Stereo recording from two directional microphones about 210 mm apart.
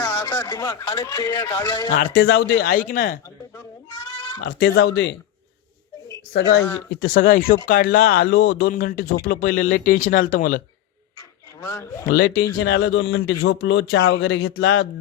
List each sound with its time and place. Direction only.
0.0 s speech: 15° left (ahead or behind)
1.9 s speech: 40° left (ahead or behind)
2.1 s speech: 65° left (ahead or behind)
2.5 s speech: 45° left (ahead or behind)
4.4 s speech: 50° left (ahead or behind)
6.3 s a man's voice: 55° left (ahead or behind)
6.6 s speech: 10° left (ahead or behind)
7.1 s speech: 40° left (ahead or behind)
8.7 s speech: 40° left (ahead or behind)
11.6 s speech: 15° left (ahead or behind)
12.0 s speech: 45° left (ahead or behind)
12.7 s a man's voice: 70° left (ahead or behind)